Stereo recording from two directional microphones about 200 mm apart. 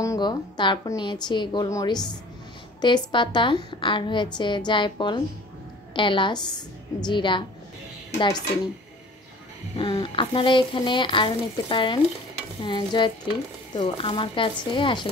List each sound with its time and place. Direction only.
0.0 s a woman's voice: 20° left (ahead or behind)
9.8 s a woman's voice: 25° left (ahead or behind)